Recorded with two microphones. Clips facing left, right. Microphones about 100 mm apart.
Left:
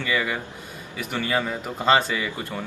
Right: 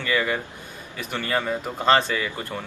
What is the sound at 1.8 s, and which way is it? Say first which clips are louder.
Speech: even; 10° left (ahead or behind).